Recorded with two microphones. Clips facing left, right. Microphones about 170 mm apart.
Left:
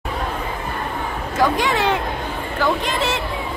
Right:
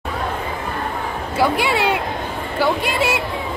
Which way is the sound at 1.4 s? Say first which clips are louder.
Even; 10° right (ahead or behind).